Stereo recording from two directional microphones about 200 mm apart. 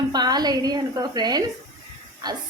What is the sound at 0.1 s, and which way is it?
A woman's voice, 20° right (ahead or behind).